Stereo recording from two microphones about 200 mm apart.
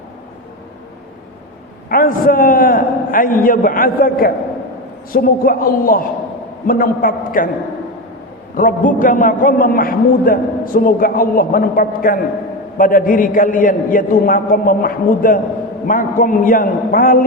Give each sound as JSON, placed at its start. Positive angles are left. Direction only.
{"t": 1.9, "sound": "a man's voice", "side_deg": 45}
{"t": 8.5, "sound": "a man's voice", "side_deg": 40}